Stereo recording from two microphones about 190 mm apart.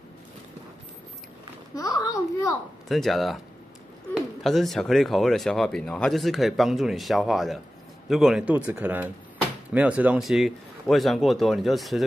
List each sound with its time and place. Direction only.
1.8 s a child's voice: 20° left (ahead or behind)
2.9 s speech: centre (ahead or behind)